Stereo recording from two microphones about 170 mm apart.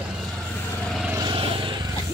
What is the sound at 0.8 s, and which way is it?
Vehicle, centre (ahead or behind).